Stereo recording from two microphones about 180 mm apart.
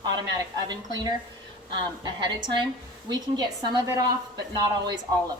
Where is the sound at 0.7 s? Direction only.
20° right (ahead or behind).